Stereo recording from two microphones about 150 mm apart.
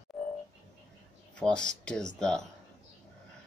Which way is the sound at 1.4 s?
5° left (ahead or behind).